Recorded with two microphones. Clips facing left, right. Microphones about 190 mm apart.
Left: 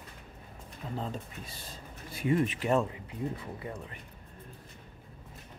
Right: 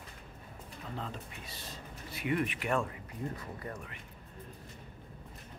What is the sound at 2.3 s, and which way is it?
Speech, 30° left (ahead or behind).